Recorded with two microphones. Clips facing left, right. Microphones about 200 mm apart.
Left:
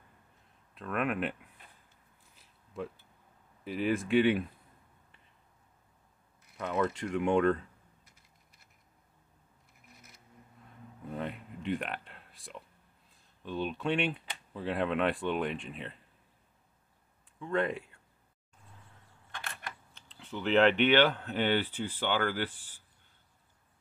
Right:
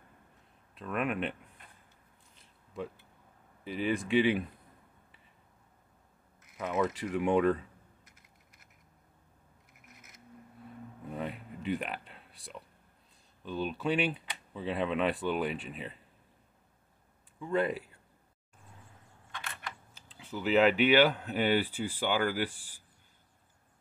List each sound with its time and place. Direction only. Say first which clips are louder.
0.7 s speech: even; centre (ahead or behind)
2.3 s a sound: even; 5° left (ahead or behind)
3.6 s speech: left 1 dB; centre (ahead or behind)
6.5 s speech: even; 5° right (ahead or behind)
11.1 s a sound: even; 5° right (ahead or behind)
13.4 s speech: even; centre (ahead or behind)
17.4 s speech: right 1 dB; 5° right (ahead or behind)
19.9 s speech: right 1 dB; 5° right (ahead or behind)